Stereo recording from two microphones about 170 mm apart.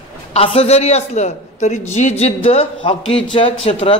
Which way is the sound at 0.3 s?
35° left (ahead or behind).